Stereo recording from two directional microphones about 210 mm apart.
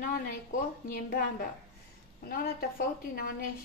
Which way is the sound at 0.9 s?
45° left (ahead or behind).